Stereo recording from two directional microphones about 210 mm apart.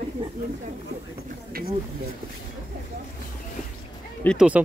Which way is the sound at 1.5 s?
45° right (ahead or behind).